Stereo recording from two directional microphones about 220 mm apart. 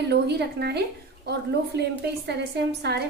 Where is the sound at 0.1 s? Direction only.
50° right (ahead or behind).